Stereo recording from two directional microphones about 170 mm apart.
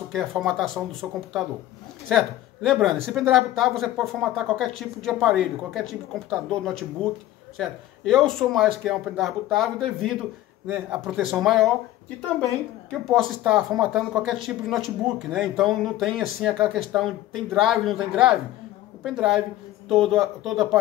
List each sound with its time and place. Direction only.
0.1 s speech: centre (ahead or behind)
2.0 s speech: centre (ahead or behind)
13.1 s speech: centre (ahead or behind)